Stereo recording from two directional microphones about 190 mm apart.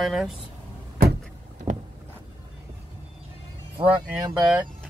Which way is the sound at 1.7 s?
45° right (ahead or behind).